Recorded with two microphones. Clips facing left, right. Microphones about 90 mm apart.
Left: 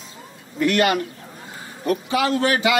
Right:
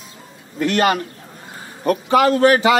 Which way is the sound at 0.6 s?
35° right (ahead or behind).